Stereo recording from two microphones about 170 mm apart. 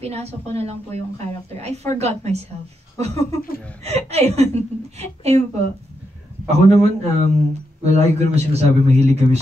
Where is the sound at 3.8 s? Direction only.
40° right (ahead or behind).